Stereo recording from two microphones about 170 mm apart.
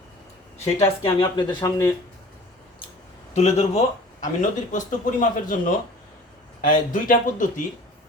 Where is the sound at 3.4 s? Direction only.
40° left (ahead or behind).